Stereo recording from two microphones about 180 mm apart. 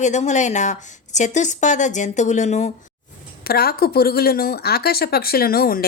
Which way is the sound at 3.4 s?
60° left (ahead or behind).